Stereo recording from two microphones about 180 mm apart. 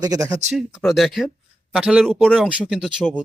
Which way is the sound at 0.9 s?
Centre (ahead or behind).